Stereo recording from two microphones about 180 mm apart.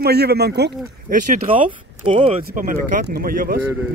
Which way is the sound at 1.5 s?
30° right (ahead or behind).